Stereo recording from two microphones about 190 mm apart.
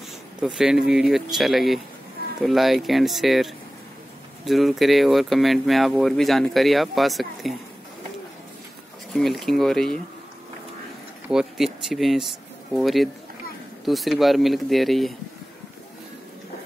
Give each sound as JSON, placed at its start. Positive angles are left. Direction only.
{"t": 0.6, "sound": "speech", "side_deg": -5}
{"t": 9.1, "sound": "speech", "side_deg": 0}
{"t": 11.2, "sound": "speech", "side_deg": 0}